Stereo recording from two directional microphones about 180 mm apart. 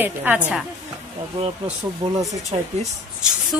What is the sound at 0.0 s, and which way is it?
Speech, 10° right (ahead or behind).